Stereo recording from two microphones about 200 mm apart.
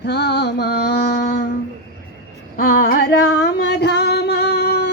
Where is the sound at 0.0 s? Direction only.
55° left (ahead or behind).